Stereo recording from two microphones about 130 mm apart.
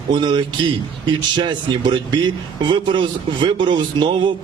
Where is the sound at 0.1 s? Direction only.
35° right (ahead or behind).